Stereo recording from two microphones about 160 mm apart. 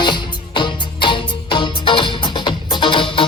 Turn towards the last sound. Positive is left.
turn(degrees=30)  # may be behind; listen again after turning